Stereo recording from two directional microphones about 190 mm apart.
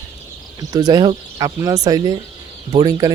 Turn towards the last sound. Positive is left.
turn(degrees=-20)  # may be behind; listen again after turning